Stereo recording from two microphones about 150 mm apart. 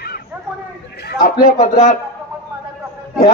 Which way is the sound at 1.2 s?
70° left (ahead or behind).